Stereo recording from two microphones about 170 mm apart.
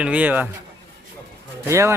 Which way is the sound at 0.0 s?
10° right (ahead or behind).